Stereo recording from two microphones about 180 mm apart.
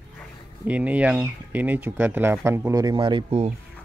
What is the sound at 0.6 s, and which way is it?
Speech, 10° right (ahead or behind).